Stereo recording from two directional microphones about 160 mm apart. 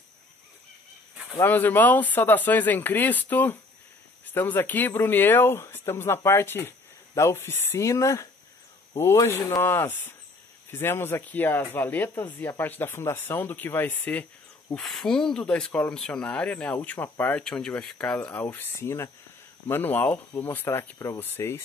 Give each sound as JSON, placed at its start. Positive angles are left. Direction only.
{"t": 1.4, "sound": "speech", "side_deg": 15}